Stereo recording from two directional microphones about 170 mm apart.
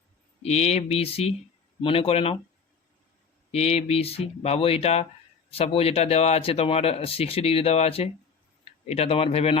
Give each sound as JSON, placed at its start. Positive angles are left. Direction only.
{"t": 0.4, "sound": "speech", "side_deg": 40}
{"t": 3.5, "sound": "speech", "side_deg": 40}